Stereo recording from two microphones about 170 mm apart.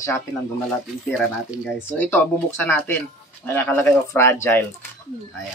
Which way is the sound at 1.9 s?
10° left (ahead or behind).